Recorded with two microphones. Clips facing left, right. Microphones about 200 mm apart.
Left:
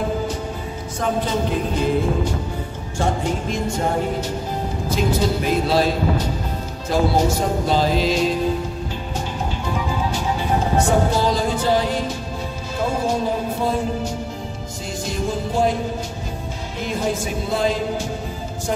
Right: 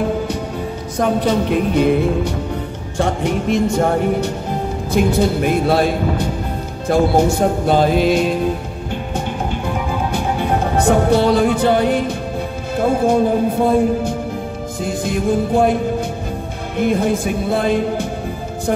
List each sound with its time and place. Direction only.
0.9 s music: 65° right (ahead or behind)
9.8 s music: 60° right (ahead or behind)
16.7 s music: 55° right (ahead or behind)